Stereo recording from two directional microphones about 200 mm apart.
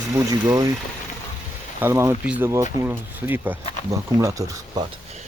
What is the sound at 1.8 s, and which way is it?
Speech, 15° right (ahead or behind).